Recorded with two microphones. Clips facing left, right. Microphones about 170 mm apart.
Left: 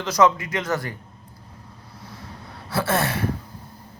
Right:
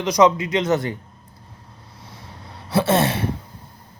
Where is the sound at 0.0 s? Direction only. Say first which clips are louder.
Right 3 dB; 20° right (ahead or behind).